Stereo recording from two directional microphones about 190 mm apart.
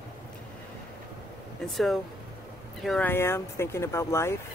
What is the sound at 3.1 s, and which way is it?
Speech, 15° left (ahead or behind).